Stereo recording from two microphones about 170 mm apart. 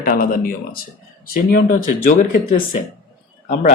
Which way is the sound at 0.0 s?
60° left (ahead or behind).